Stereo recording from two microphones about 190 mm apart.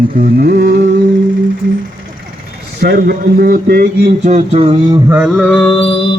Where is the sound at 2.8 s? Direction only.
55° right (ahead or behind).